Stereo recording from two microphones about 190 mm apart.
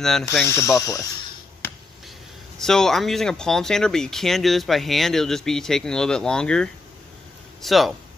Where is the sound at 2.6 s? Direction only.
Centre (ahead or behind).